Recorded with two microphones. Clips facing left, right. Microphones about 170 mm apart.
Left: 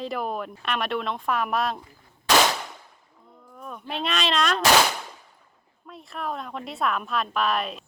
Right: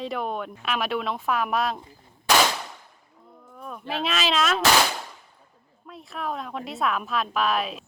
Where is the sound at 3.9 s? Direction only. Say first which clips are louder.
Right 1 dB; centre (ahead or behind).